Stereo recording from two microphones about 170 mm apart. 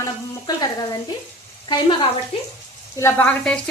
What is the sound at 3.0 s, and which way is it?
Sizzle, 10° left (ahead or behind).